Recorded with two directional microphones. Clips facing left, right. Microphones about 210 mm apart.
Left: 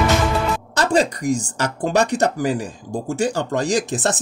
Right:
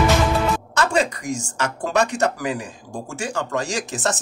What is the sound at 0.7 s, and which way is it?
Speech, 35° left (ahead or behind).